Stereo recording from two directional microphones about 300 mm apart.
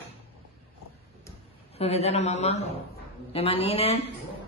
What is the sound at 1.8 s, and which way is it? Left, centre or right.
Speech, left.